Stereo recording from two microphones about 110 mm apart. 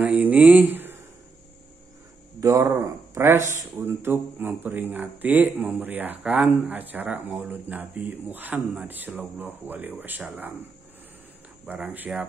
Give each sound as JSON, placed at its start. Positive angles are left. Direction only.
{"t": 0.0, "sound": "speech", "side_deg": -15}
{"t": 2.4, "sound": "speech", "side_deg": -30}
{"t": 11.6, "sound": "speech", "side_deg": -10}